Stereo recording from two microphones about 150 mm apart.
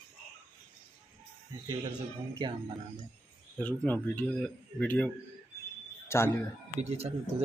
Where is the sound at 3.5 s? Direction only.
10° left (ahead or behind).